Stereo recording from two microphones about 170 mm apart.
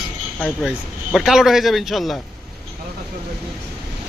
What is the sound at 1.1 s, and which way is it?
A man's voice, centre (ahead or behind).